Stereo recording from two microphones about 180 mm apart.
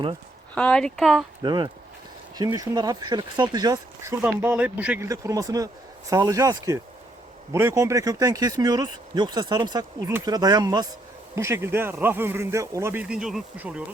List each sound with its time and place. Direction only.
0.5 s speech: 5° left (ahead or behind)
1.4 s speech: 25° right (ahead or behind); by 13.8 s 5° right (ahead or behind)